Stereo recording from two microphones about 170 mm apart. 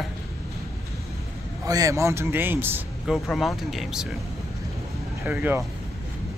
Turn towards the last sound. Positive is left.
turn(degrees=-10)  # may be behind; listen again after turning